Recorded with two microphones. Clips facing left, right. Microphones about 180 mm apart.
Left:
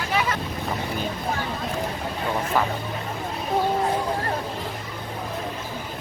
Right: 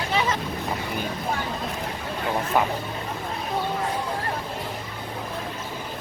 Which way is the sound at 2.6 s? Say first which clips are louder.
Right 1 dB; 15° right (ahead or behind).